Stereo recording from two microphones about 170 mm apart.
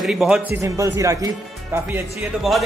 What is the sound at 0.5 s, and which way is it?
A man's voice, 20° right (ahead or behind).